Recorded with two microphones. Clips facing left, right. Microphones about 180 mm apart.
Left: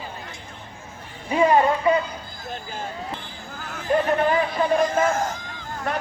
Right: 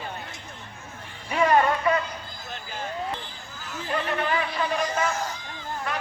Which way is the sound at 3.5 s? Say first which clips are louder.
Left 8 dB; 60° left (ahead or behind).